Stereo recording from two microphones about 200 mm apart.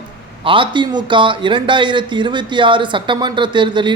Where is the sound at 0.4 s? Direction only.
25° right (ahead or behind).